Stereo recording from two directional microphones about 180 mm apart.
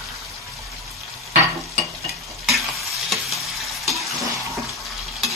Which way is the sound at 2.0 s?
Centre (ahead or behind).